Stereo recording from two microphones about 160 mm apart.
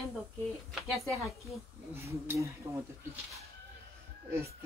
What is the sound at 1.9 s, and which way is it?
Speech, 15° right (ahead or behind).